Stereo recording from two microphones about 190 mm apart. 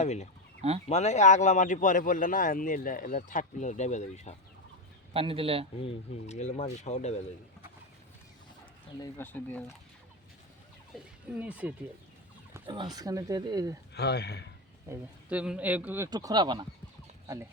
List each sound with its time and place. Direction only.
0.0 s speech: 35° left (ahead or behind)
5.1 s speech: 30° right (ahead or behind)
6.2 s speech: 40° left (ahead or behind)
9.0 s speech: 10° left (ahead or behind)
10.9 s speech: 5° right (ahead or behind)
12.6 s speech: 25° right (ahead or behind)
13.9 s speech: 60° left (ahead or behind)
14.8 s speech: 5° right (ahead or behind)
16.0 s speech: 20° right (ahead or behind)